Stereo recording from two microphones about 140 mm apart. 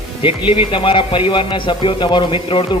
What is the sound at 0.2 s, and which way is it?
A man's voice, 40° left (ahead or behind).